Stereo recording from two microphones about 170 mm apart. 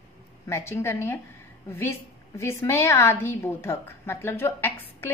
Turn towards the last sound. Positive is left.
turn(degrees=15)  # may be behind; listen again after turning